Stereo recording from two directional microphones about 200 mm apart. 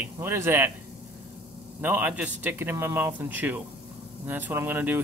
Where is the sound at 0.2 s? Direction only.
10° right (ahead or behind).